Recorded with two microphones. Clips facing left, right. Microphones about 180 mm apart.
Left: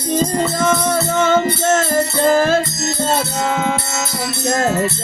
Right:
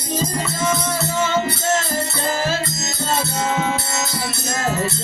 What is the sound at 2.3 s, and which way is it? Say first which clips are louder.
Music: left 9 dB; 55° left (ahead or behind).